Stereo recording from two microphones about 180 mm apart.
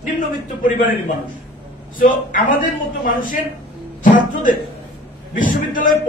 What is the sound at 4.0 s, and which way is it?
Music, 50° left (ahead or behind).